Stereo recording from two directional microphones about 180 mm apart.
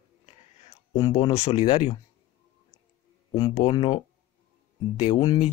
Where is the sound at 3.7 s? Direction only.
35° left (ahead or behind).